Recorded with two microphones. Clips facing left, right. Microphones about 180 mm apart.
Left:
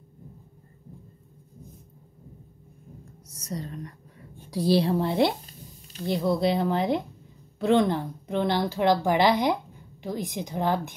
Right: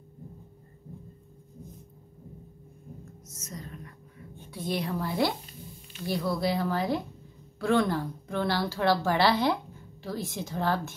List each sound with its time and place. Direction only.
3.3 s a woman's voice: 35° left (ahead or behind); by 11.0 s 15° left (ahead or behind)